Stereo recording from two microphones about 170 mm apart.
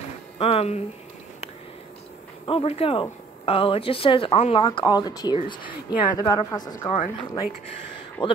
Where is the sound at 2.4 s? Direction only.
35° left (ahead or behind).